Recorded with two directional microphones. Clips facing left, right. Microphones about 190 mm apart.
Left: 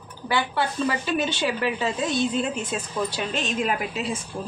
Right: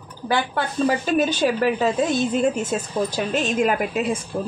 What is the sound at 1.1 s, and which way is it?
A woman's voice, 45° right (ahead or behind).